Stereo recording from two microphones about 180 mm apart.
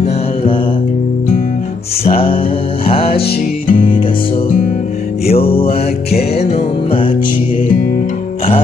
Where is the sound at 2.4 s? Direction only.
30° left (ahead or behind).